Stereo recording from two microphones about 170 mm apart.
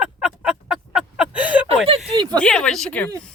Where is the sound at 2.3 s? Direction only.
5° left (ahead or behind).